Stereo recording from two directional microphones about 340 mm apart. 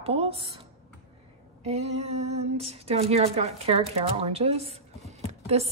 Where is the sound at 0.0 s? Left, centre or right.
Centre.